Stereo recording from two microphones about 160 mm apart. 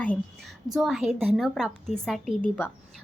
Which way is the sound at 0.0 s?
10° left (ahead or behind).